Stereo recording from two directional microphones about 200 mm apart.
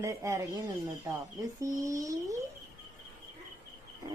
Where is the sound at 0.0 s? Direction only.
15° right (ahead or behind).